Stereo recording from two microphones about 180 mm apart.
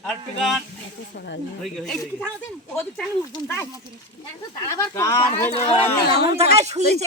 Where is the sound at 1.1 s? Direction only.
70° left (ahead or behind).